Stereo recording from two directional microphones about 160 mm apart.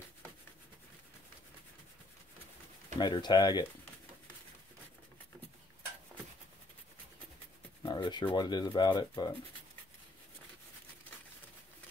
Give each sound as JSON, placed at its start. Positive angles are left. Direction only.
{"t": 3.0, "sound": "speech", "side_deg": 25}
{"t": 7.8, "sound": "speech", "side_deg": 25}